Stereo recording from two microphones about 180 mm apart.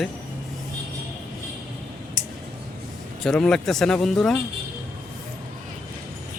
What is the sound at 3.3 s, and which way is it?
A man's voice, 5° left (ahead or behind).